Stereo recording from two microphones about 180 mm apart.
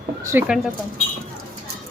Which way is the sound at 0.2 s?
15° right (ahead or behind).